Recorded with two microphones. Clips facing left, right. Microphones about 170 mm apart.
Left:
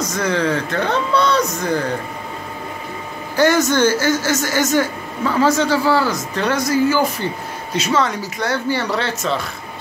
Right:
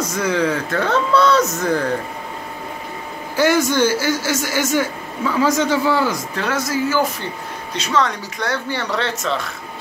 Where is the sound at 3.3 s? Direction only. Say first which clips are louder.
Left 1 dB; 10° right (ahead or behind).